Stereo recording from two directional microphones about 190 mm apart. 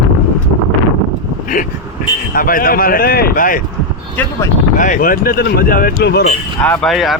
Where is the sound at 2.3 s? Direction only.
50° left (ahead or behind).